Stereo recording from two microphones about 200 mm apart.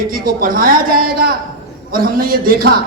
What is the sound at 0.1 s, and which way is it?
A man's voice, 45° right (ahead or behind).